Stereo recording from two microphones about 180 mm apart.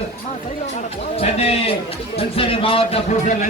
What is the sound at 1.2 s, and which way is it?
A man's voice, 35° left (ahead or behind).